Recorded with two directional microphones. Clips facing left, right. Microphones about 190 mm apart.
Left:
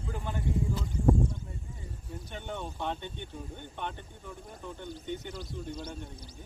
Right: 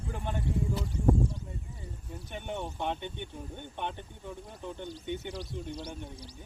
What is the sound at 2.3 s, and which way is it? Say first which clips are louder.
Speech: right 2 dB; 20° right (ahead or behind).